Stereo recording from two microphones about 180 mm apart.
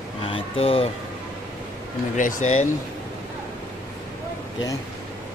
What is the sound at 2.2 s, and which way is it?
Speech, 45° left (ahead or behind).